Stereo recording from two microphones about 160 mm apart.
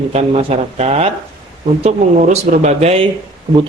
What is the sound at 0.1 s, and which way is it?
Speech, 40° right (ahead or behind).